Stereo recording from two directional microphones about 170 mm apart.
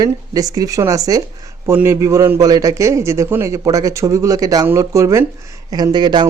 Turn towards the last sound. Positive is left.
turn(degrees=-25)  # may be behind; listen again after turning